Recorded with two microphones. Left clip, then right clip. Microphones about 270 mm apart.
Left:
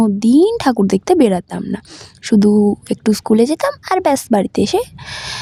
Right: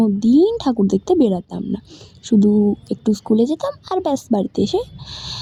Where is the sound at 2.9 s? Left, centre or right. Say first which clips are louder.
Left 4 dB; left.